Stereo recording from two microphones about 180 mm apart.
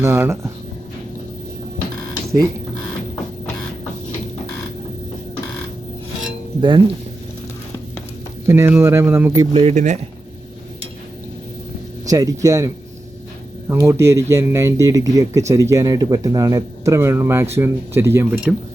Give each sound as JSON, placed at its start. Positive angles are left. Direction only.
{"t": 0.0, "sound": "speech", "side_deg": -15}
{"t": 6.6, "sound": "speech", "side_deg": -25}
{"t": 8.4, "sound": "speech", "side_deg": -15}
{"t": 9.5, "sound": "speech", "side_deg": -35}
{"t": 12.0, "sound": "speech", "side_deg": -20}